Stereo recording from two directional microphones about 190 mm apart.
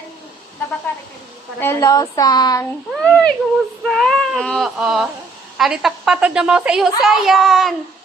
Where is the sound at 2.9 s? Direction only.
5° left (ahead or behind).